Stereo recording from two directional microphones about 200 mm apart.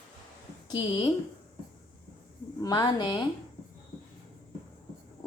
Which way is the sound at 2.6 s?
20° left (ahead or behind).